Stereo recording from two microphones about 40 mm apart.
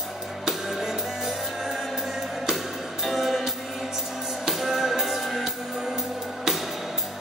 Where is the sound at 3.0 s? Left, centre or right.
Centre.